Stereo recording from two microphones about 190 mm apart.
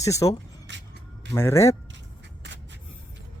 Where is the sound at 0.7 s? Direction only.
70° right (ahead or behind).